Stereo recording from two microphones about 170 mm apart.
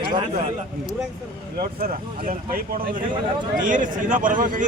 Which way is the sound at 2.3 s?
55° right (ahead or behind).